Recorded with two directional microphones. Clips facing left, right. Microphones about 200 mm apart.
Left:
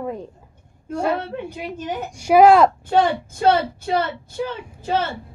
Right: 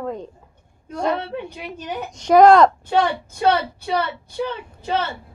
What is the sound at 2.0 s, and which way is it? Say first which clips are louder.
Speech: right 1 dB; 10° left (ahead or behind).